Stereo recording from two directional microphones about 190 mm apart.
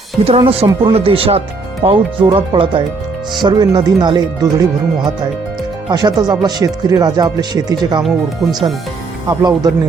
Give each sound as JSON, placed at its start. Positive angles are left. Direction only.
{"t": 0.3, "sound": "speech", "side_deg": -30}
{"t": 5.9, "sound": "speech", "side_deg": -20}
{"t": 8.0, "sound": "speech", "side_deg": 0}
{"t": 9.3, "sound": "speech", "side_deg": -20}